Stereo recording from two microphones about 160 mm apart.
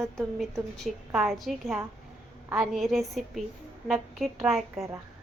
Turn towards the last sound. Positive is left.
turn(degrees=0)  # may be behind; listen again after turning